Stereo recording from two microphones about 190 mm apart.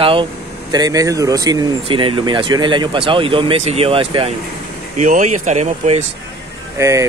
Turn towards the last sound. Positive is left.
turn(degrees=-15)  # may be behind; listen again after turning